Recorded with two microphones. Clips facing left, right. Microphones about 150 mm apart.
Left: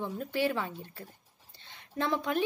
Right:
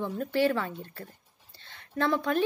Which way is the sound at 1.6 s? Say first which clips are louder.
Right 4 dB; 15° left (ahead or behind).